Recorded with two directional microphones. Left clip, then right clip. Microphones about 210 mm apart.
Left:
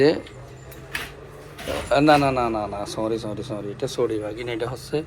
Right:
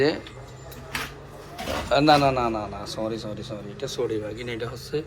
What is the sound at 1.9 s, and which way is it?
A man's voice, 10° right (ahead or behind).